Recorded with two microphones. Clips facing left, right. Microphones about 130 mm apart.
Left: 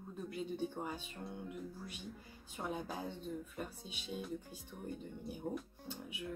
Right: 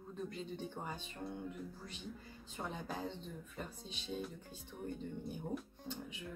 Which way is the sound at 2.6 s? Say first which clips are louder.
Left 1 dB; 5° left (ahead or behind).